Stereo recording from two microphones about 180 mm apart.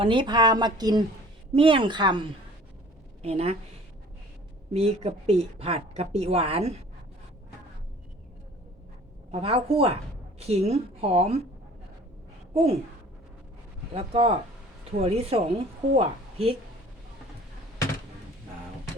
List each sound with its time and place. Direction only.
0.0 s a woman's voice: 25° right (ahead or behind)
4.7 s speech: 35° right (ahead or behind)
9.3 s speech: 35° right (ahead or behind)
12.5 s speech: 35° right (ahead or behind)
13.9 s speech: 35° right (ahead or behind)